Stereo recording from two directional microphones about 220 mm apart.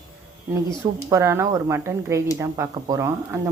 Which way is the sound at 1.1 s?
10° right (ahead or behind).